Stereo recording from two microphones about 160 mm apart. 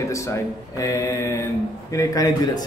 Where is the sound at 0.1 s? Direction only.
20° left (ahead or behind).